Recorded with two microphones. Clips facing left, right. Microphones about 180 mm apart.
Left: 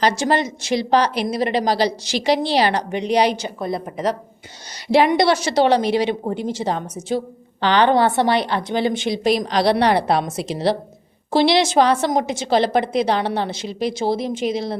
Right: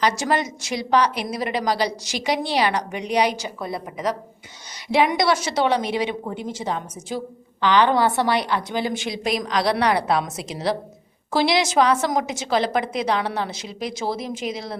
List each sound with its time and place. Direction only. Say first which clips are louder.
0.0 s a woman's voice: left 3 dB; 30° left (ahead or behind)